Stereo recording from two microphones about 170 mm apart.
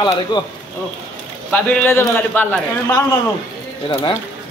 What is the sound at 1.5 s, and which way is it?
A man's voice, 10° left (ahead or behind).